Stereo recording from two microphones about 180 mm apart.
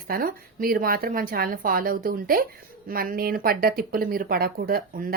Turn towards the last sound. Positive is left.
turn(degrees=-55)  # may be behind; listen again after turning